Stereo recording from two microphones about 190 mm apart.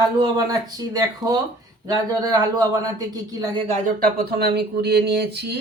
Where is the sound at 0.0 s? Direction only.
20° right (ahead or behind).